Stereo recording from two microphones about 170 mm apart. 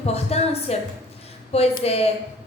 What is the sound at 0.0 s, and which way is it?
Speech, 35° left (ahead or behind).